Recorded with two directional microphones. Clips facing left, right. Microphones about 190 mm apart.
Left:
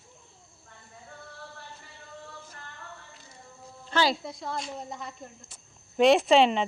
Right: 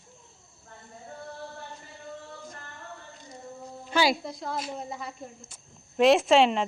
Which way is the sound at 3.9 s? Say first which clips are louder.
Right 1 dB; 10° right (ahead or behind).